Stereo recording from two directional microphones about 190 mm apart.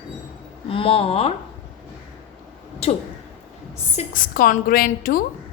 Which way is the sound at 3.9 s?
50° left (ahead or behind).